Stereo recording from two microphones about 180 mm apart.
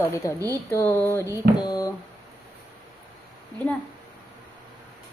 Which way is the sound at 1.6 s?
20° left (ahead or behind).